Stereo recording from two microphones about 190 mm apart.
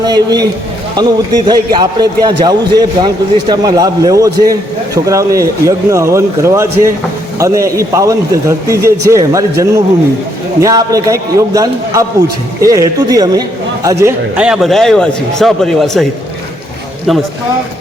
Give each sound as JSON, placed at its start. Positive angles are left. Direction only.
{"t": 0.0, "sound": "a man's voice", "side_deg": -20}
{"t": 17.1, "sound": "a man's voice", "side_deg": 0}